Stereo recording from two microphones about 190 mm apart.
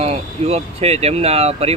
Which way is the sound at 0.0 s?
35° right (ahead or behind).